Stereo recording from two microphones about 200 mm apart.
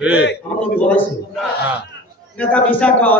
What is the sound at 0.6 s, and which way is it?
Speech, 5° left (ahead or behind).